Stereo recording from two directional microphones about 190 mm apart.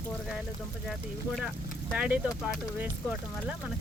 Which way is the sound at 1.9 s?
5° right (ahead or behind).